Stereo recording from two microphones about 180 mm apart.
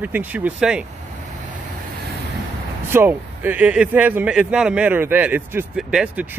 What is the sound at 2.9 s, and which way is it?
Speech, 10° right (ahead or behind).